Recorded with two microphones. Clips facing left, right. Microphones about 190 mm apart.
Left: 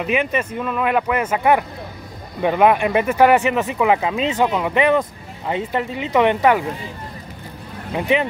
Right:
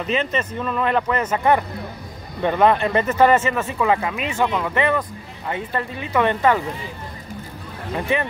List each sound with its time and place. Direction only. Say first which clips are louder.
0.0 s speech: left 2 dB; 10° left (ahead or behind)
7.9 s speech: left 3 dB; 15° left (ahead or behind)